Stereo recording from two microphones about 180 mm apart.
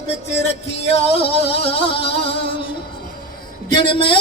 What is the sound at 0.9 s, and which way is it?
Music, 35° left (ahead or behind).